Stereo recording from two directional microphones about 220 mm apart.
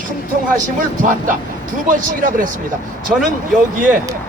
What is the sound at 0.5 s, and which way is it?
Speech, 35° right (ahead or behind).